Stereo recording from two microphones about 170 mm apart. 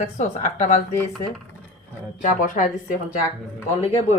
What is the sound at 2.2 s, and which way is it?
Speech, 50° left (ahead or behind).